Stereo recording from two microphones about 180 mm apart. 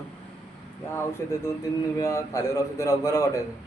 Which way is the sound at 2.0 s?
20° left (ahead or behind).